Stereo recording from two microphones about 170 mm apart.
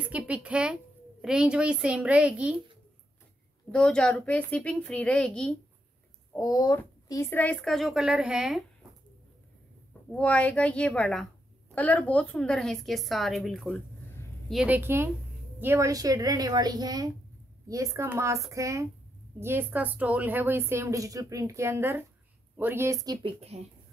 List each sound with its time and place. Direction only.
0.0 s a woman's voice: 10° right (ahead or behind)
3.7 s speech: 5° left (ahead or behind)
6.3 s speech: 20° left (ahead or behind); by 8.6 s 5° right (ahead or behind)
10.1 s a woman's voice: 10° left (ahead or behind); by 23.1 s 20° right (ahead or behind)
23.2 s a woman's voice: 35° right (ahead or behind)